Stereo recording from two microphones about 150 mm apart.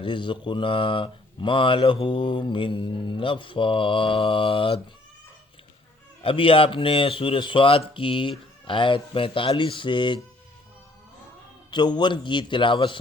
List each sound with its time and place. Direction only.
0.0 s speech: 35° left (ahead or behind)
6.2 s speech: 35° left (ahead or behind)
11.7 s speech: 30° left (ahead or behind)